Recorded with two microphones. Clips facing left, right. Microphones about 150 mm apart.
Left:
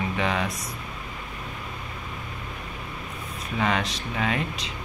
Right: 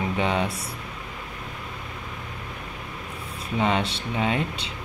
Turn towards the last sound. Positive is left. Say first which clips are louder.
# right 2 dB
turn(degrees=-25)  # may be behind; listen again after turning